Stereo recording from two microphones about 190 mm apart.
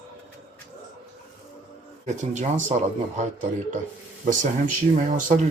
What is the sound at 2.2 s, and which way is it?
Speech, 40° right (ahead or behind).